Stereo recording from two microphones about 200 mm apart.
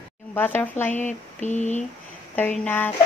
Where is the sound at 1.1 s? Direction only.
40° left (ahead or behind).